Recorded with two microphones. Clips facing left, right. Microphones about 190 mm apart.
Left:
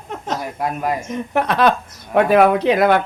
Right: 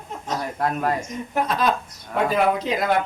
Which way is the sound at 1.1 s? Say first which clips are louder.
Left 4 dB; 70° left (ahead or behind).